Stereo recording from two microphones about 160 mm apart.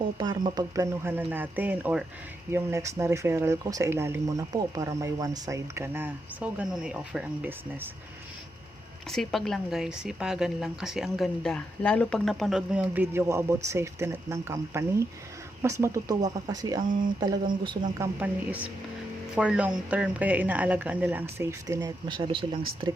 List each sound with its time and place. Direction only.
0.2 s speech: 30° right (ahead or behind); by 7.9 s 10° right (ahead or behind)
9.0 s a woman's voice: centre (ahead or behind); by 18.1 s 20° right (ahead or behind)
18.2 s speech: 10° right (ahead or behind); by 22.9 s 35° right (ahead or behind)